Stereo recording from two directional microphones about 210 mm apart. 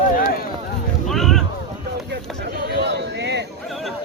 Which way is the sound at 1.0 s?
Centre (ahead or behind).